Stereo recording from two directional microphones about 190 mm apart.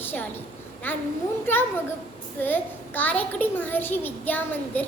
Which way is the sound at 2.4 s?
10° left (ahead or behind).